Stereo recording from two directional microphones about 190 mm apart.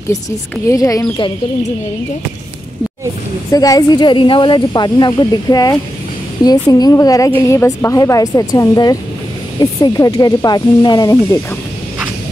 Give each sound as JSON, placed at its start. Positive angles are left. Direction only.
{"t": 0.7, "sound": "a woman's voice", "side_deg": 15}
{"t": 3.5, "sound": "a woman's voice", "side_deg": 20}